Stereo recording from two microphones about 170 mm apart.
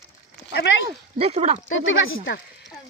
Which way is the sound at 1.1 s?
35° right (ahead or behind).